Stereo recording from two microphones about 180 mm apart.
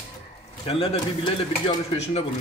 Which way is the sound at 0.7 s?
30° left (ahead or behind).